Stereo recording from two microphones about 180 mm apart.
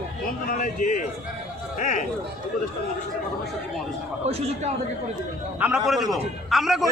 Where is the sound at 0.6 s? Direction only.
45° left (ahead or behind).